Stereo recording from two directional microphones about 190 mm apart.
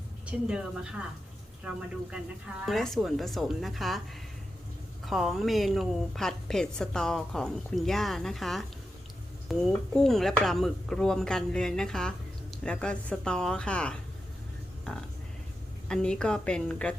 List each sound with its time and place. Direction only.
0.3 s speech: 5° right (ahead or behind)
5.0 s speech: centre (ahead or behind)
15.9 s speech: 5° left (ahead or behind)